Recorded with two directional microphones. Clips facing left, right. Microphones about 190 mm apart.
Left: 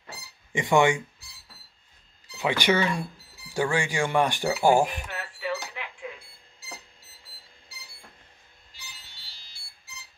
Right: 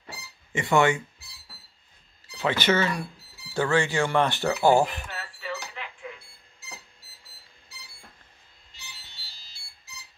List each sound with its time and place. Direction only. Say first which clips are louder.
0.5 s speech: left 1 dB; 15° left (ahead or behind)
2.3 s speech: even; 15° left (ahead or behind)